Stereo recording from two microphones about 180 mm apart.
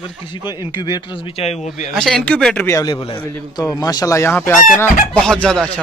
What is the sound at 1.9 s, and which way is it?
Speech, centre (ahead or behind).